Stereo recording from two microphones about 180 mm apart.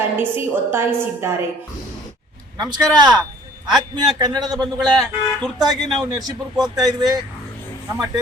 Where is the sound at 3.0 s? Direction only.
25° right (ahead or behind).